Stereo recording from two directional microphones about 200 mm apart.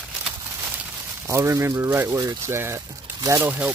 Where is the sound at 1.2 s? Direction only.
15° right (ahead or behind).